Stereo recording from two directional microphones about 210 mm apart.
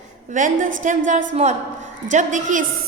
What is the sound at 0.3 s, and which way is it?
A woman's voice, 40° right (ahead or behind).